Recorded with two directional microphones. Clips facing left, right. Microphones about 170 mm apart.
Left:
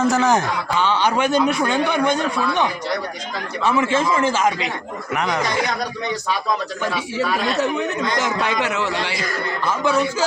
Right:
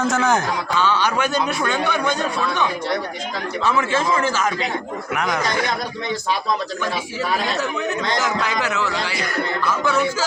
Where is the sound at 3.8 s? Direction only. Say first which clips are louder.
Left 2 dB; 25° left (ahead or behind).